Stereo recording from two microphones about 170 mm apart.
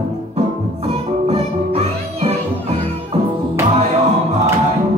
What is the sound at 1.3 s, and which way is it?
Music, 35° right (ahead or behind).